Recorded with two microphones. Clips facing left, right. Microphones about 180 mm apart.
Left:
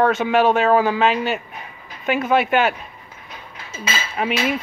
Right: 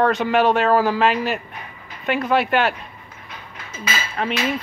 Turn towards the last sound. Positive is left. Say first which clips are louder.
# left 2 dB
turn(degrees=5)  # may be behind; listen again after turning